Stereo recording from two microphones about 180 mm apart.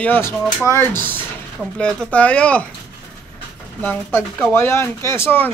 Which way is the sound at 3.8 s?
10° left (ahead or behind).